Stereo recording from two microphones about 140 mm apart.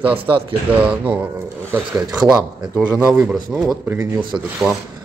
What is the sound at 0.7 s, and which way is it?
Speech, 10° right (ahead or behind).